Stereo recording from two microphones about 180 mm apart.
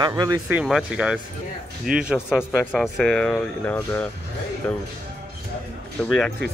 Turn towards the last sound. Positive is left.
turn(degrees=5)  # may be behind; listen again after turning